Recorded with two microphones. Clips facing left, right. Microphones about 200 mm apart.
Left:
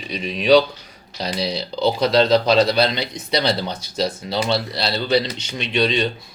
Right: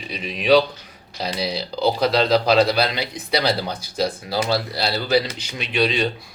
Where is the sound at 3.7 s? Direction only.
25° left (ahead or behind).